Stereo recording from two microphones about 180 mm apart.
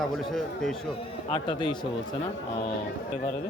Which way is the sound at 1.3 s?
25° left (ahead or behind).